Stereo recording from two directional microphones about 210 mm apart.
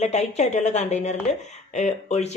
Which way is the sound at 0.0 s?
30° left (ahead or behind).